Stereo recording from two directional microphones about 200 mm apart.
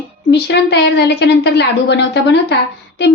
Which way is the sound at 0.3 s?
55° left (ahead or behind).